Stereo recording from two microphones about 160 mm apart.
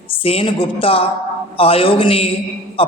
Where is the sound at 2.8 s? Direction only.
35° left (ahead or behind).